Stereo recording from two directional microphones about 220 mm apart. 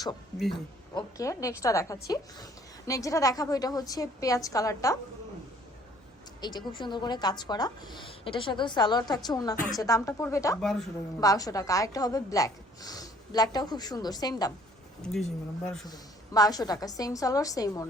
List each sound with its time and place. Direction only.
0.9 s a woman's voice: 15° left (ahead or behind)
6.7 s a woman's voice: 20° left (ahead or behind)
10.6 s speech: centre (ahead or behind)
11.2 s a woman's voice: 15° left (ahead or behind)
15.0 s speech: centre (ahead or behind)
15.9 s a woman's voice: 15° left (ahead or behind)